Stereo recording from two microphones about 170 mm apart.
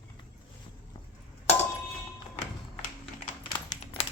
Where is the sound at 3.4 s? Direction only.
30° left (ahead or behind).